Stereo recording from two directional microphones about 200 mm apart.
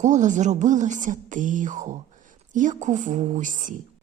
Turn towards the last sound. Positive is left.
turn(degrees=-40)  # may be behind; listen again after turning